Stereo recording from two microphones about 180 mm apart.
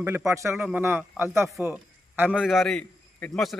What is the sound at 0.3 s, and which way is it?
A man's voice, 15° right (ahead or behind).